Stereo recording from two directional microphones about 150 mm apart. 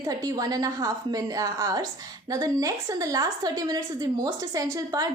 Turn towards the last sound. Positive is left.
turn(degrees=-25)  # may be behind; listen again after turning